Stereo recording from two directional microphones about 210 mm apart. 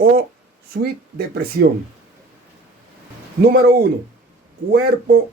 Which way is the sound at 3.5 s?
50° right (ahead or behind).